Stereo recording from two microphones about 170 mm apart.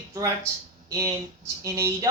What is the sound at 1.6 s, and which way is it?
Speech, 15° right (ahead or behind).